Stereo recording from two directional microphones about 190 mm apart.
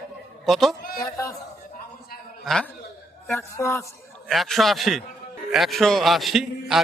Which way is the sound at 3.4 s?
15° left (ahead or behind).